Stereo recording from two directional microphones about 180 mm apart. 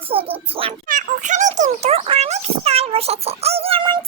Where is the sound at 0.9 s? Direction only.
50° right (ahead or behind).